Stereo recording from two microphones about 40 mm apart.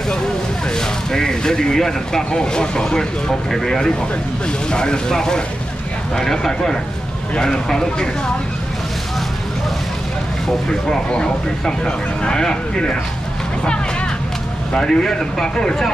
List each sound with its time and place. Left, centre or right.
0.7 s speech: centre
10.7 s speech: centre
14.7 s speech: centre